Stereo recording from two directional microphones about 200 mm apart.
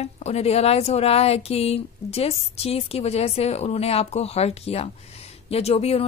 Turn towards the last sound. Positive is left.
turn(degrees=30)  # may be behind; listen again after turning